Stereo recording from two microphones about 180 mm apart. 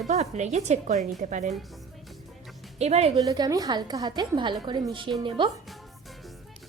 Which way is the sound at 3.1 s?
20° right (ahead or behind).